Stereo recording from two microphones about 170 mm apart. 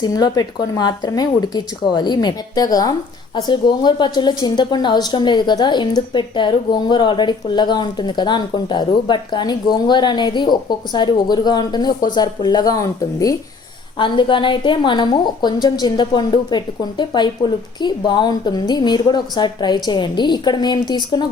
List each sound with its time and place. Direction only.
0.0 s speech: 25° left (ahead or behind)